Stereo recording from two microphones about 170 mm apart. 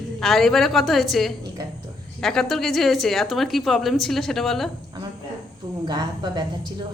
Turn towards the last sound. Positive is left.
turn(degrees=-25)  # may be behind; listen again after turning